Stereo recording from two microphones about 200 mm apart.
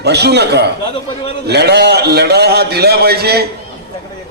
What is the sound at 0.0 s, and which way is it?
A man's voice, 55° right (ahead or behind).